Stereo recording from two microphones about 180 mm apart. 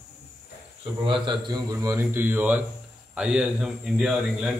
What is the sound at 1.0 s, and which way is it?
A man's voice, 25° right (ahead or behind).